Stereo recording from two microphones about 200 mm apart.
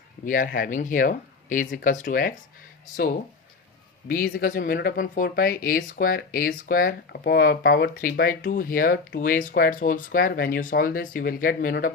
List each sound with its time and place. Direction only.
0.3 s speech: 45° left (ahead or behind)